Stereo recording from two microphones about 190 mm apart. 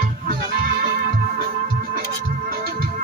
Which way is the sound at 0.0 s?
45° right (ahead or behind).